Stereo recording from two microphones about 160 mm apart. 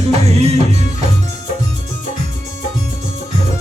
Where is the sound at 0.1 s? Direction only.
40° right (ahead or behind).